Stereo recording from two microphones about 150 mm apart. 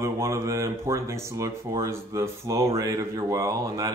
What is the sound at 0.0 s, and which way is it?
Speech, 20° right (ahead or behind).